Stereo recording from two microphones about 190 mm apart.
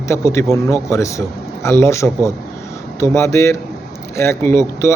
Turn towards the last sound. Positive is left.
turn(degrees=15)  # may be behind; listen again after turning